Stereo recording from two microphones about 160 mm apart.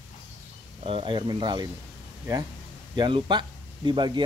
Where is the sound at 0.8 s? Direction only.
35° right (ahead or behind).